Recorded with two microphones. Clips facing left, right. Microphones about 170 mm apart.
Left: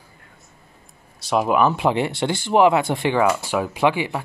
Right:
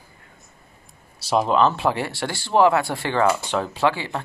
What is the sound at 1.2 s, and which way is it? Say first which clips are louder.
Speech: even; 5° left (ahead or behind).